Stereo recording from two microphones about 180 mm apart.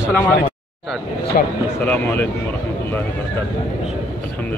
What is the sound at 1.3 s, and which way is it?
Speech, 50° left (ahead or behind).